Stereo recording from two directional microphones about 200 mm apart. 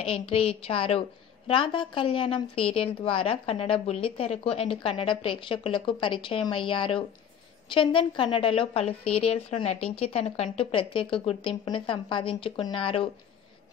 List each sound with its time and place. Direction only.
0.0 s a woman's voice: 30° left (ahead or behind)